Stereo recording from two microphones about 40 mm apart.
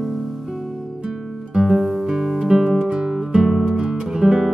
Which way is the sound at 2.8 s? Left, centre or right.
Centre.